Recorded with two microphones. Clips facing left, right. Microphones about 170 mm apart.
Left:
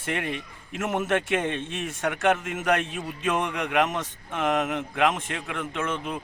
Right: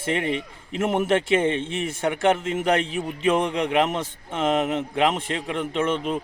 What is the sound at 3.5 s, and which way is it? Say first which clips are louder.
A man's voice: right 3 dB; 25° right (ahead or behind).